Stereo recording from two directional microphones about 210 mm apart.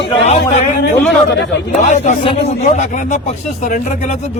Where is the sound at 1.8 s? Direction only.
35° left (ahead or behind).